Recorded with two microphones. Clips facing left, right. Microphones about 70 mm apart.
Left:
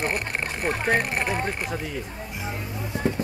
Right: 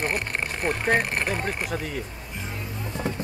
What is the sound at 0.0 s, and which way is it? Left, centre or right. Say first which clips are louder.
Speech: even; centre.